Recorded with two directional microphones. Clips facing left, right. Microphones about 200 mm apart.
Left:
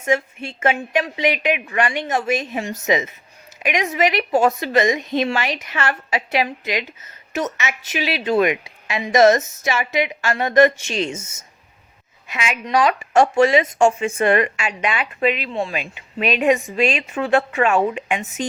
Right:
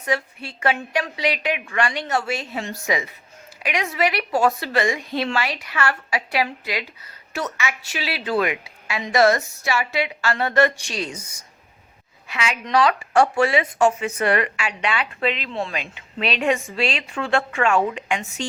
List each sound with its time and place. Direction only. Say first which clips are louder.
0.0 s a woman's voice: left 4 dB; 20° left (ahead or behind)